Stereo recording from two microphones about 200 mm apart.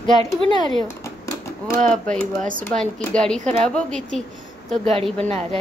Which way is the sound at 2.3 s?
40° right (ahead or behind).